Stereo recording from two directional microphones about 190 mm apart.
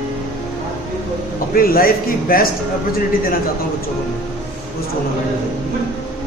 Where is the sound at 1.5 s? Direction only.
50° left (ahead or behind).